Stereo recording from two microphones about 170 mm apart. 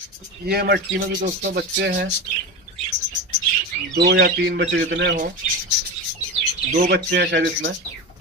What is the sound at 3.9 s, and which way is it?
Speech, 80° right.